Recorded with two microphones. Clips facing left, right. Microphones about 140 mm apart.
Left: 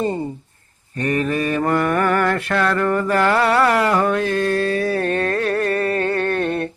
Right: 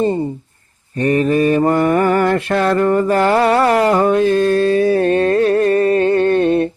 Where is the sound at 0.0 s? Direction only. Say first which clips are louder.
Right 5 dB; 25° right (ahead or behind).